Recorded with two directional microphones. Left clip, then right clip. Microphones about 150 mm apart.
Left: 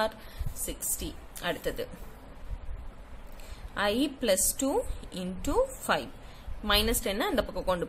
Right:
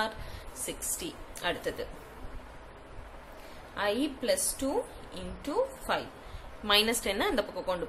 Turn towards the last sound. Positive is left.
turn(degrees=50)  # may be behind; listen again after turning